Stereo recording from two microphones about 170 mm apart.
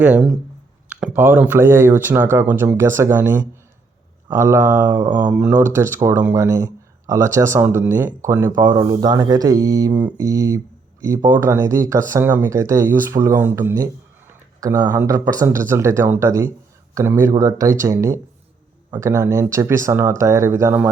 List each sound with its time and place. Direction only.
0.0 s speech: 5° right (ahead or behind)